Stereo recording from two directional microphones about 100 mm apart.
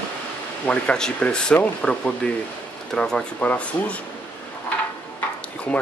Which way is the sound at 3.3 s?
15° left (ahead or behind).